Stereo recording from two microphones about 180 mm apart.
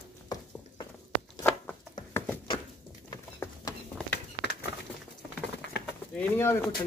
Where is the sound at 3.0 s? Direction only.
20° left (ahead or behind).